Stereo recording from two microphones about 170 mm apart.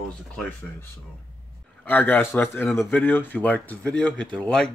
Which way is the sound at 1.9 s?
10° left (ahead or behind).